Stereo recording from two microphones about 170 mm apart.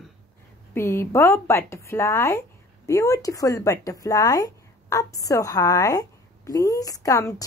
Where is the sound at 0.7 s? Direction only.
15° left (ahead or behind).